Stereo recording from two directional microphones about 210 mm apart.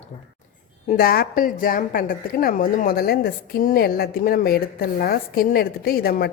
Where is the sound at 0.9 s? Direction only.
45° left (ahead or behind).